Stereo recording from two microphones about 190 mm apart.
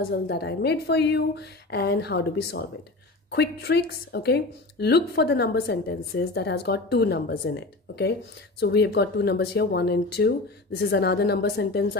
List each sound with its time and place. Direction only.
0.1 s speech: 60° left (ahead or behind)